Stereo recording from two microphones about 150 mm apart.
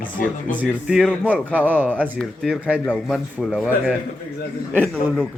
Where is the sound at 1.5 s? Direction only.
10° right (ahead or behind).